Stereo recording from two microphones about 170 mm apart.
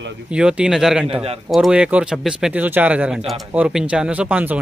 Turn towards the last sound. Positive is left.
turn(degrees=-10)  # may be behind; listen again after turning